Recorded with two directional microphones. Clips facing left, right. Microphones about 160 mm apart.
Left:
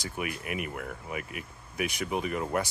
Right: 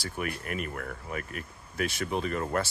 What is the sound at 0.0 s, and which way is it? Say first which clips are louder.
Speech: right 1 dB; 15° left (ahead or behind).